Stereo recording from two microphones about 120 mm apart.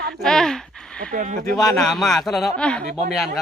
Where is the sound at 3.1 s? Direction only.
Centre (ahead or behind).